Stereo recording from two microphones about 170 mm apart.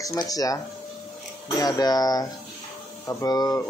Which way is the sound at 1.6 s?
20° left (ahead or behind).